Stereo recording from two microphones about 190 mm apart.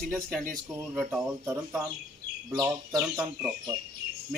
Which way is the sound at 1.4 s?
15° right (ahead or behind).